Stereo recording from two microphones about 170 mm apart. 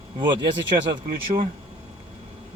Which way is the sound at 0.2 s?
30° right (ahead or behind).